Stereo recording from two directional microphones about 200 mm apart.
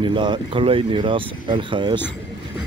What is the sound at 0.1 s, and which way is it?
Speech, 25° right (ahead or behind).